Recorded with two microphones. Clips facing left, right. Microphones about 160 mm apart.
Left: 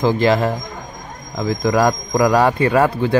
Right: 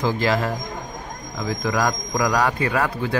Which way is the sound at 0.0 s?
25° left (ahead or behind).